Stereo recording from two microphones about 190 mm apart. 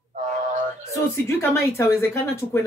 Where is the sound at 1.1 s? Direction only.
15° left (ahead or behind).